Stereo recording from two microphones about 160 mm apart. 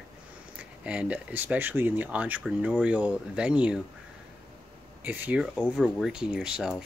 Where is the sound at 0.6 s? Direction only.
10° right (ahead or behind).